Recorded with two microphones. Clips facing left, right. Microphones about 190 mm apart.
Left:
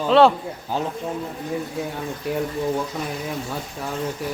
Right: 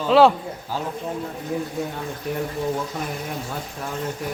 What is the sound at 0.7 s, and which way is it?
Speech, 20° left (ahead or behind).